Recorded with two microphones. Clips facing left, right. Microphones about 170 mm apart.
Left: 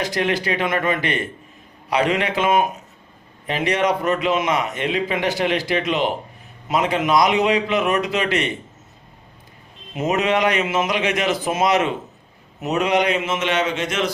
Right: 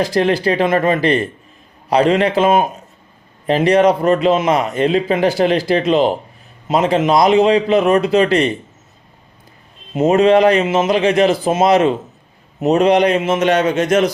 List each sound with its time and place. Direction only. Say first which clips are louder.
0.0 s a man's voice: right 7 dB; 35° right (ahead or behind)
9.9 s a man's voice: right 9 dB; 30° right (ahead or behind)